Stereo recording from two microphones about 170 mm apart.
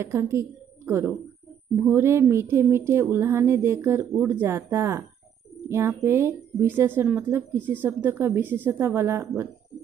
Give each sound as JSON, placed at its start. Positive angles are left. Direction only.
{"t": 0.0, "sound": "a woman's voice", "side_deg": -15}